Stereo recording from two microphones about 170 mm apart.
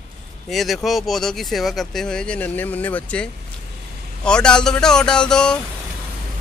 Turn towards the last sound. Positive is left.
turn(degrees=5)  # may be behind; listen again after turning